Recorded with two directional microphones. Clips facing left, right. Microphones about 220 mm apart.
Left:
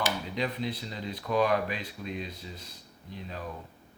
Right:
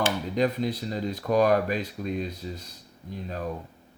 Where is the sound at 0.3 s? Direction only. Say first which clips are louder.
Right 10 dB; 45° right (ahead or behind).